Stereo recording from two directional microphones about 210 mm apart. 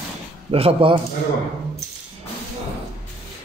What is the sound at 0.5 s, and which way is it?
Speech, 25° right (ahead or behind).